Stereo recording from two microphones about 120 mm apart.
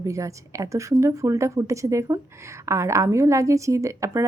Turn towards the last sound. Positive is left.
turn(degrees=-25)  # may be behind; listen again after turning